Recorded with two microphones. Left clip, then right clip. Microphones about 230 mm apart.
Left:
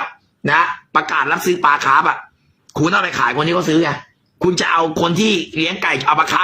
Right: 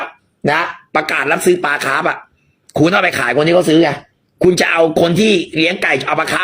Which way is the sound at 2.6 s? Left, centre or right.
Centre.